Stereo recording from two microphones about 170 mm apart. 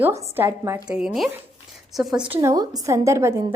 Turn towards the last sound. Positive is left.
turn(degrees=-15)  # may be behind; listen again after turning